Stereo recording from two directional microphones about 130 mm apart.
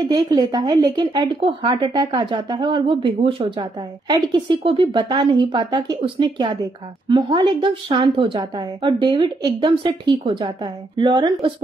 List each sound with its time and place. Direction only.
0.1 s a woman's voice: 30° right (ahead or behind)